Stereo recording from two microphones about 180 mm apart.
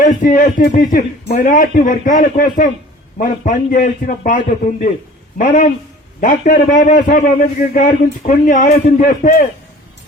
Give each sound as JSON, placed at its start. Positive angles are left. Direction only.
{"t": 0.0, "sound": "a man's voice", "side_deg": 45}